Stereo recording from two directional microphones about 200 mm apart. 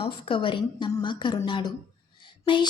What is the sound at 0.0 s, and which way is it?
A woman's voice, 25° left (ahead or behind).